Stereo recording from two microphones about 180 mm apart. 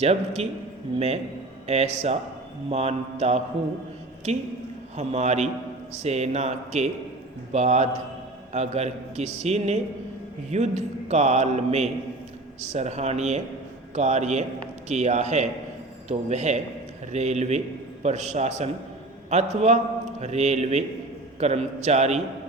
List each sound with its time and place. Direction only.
0.0 s a man's voice: 35° right (ahead or behind)